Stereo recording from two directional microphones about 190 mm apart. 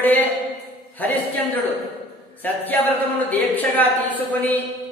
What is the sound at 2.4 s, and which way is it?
A man's voice, 10° left (ahead or behind).